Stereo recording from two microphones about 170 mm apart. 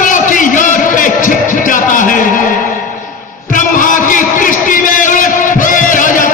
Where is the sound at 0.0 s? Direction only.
50° left (ahead or behind).